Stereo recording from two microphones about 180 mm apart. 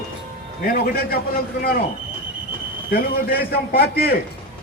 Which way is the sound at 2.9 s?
55° left (ahead or behind).